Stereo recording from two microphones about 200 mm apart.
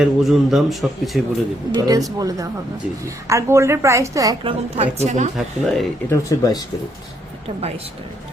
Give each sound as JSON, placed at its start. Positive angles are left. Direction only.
{"t": 0.0, "sound": "a man's voice", "side_deg": 0}
{"t": 1.7, "sound": "a woman's voice", "side_deg": -20}
{"t": 4.8, "sound": "a woman's voice", "side_deg": -35}
{"t": 5.4, "sound": "a man's voice", "side_deg": 0}
{"t": 6.1, "sound": "speech", "side_deg": 20}